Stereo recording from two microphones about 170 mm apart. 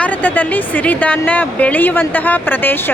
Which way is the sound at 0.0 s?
10° left (ahead or behind).